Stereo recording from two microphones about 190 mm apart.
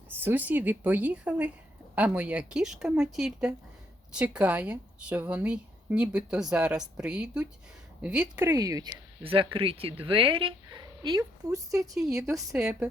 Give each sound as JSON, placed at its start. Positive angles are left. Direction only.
{"t": 0.1, "sound": "a woman's voice", "side_deg": -10}
{"t": 12.5, "sound": "a woman's voice", "side_deg": -5}